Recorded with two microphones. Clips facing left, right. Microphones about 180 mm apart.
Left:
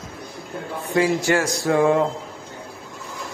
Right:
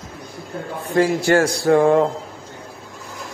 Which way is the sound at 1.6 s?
40° right (ahead or behind).